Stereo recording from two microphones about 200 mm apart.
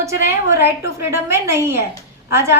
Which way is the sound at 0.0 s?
15° right (ahead or behind).